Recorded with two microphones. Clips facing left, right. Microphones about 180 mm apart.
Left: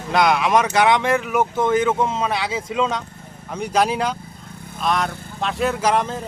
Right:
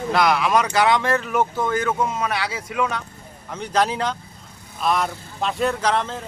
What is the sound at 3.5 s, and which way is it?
Speech, 10° left (ahead or behind).